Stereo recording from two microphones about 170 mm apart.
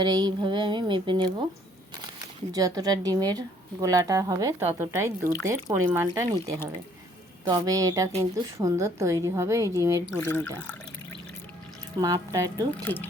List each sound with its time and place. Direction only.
0.0 s speech: 25° right (ahead or behind)
2.5 s speech: 20° right (ahead or behind)
7.4 s a woman's voice: 25° right (ahead or behind)
10.2 s speech: 10° left (ahead or behind)
11.9 s speech: 20° right (ahead or behind)
12.7 s speech: 10° left (ahead or behind)